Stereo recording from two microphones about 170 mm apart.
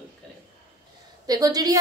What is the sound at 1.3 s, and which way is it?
Speech, 20° right (ahead or behind).